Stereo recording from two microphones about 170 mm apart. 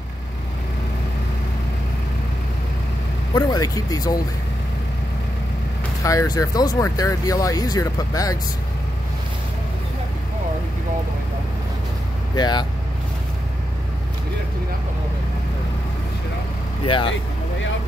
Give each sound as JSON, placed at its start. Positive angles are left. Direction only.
{"t": 3.3, "sound": "speech", "side_deg": 20}
{"t": 6.0, "sound": "speech", "side_deg": 20}
{"t": 12.4, "sound": "speech", "side_deg": 25}
{"t": 16.8, "sound": "speech", "side_deg": 30}